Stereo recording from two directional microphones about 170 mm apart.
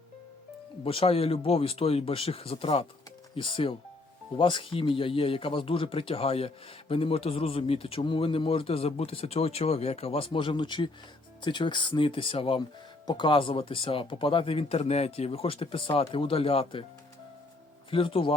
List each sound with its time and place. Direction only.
0.9 s speech: 35° left (ahead or behind)
17.9 s speech: 30° left (ahead or behind)